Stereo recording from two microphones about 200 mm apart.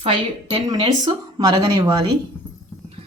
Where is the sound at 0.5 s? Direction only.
20° right (ahead or behind).